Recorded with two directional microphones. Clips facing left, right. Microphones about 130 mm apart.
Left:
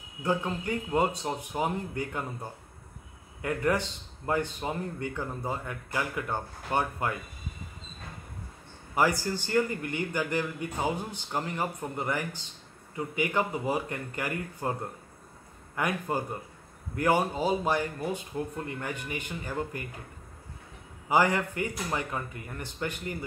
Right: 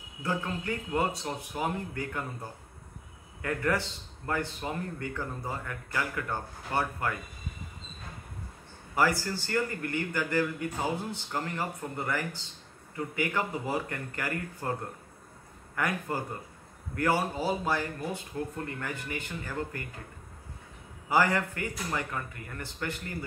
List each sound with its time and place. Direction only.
0.2 s speech: 20° left (ahead or behind)
3.4 s speech: 20° left (ahead or behind)
8.9 s speech: 20° left (ahead or behind)
15.7 s speech: 20° left (ahead or behind)
21.1 s speech: 20° left (ahead or behind)